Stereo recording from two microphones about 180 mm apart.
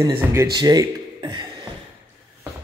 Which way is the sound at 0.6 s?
25° right (ahead or behind).